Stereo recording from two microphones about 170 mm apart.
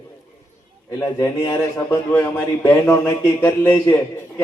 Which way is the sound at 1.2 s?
25° left (ahead or behind).